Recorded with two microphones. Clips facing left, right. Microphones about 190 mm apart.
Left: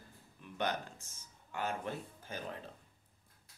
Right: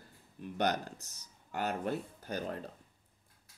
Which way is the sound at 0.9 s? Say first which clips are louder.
Right 5 dB; 40° right (ahead or behind).